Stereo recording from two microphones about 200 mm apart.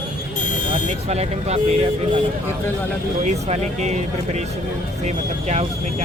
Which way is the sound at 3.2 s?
35° right (ahead or behind).